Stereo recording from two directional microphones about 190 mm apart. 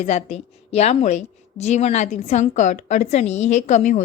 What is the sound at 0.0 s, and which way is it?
A woman's voice, 35° left (ahead or behind).